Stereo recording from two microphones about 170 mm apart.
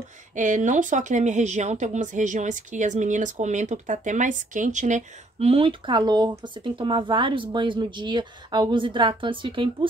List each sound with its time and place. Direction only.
0.4 s speech: 45° right (ahead or behind); by 9.8 s 30° right (ahead or behind)